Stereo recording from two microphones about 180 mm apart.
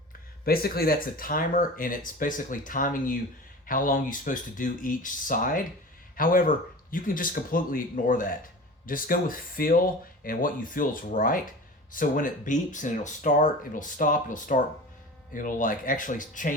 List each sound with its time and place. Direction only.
0.4 s speech: 55° left (ahead or behind)